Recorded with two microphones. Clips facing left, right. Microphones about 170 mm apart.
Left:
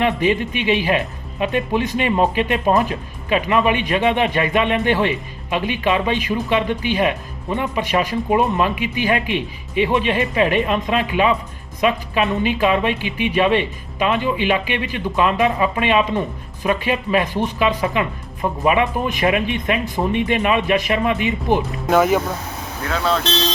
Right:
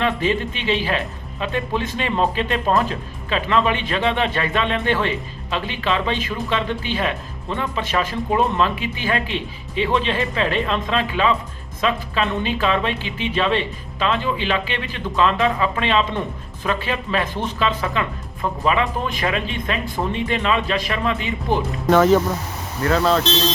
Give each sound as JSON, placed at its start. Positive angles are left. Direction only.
{"t": 0.0, "sound": "speech", "side_deg": 15}
{"t": 22.8, "sound": "speech", "side_deg": 0}